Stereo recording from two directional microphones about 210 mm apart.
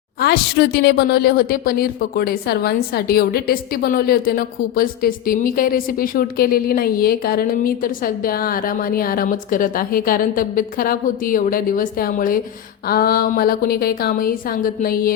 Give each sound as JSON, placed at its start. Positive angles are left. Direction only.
{"t": 0.2, "sound": "a woman's voice", "side_deg": 50}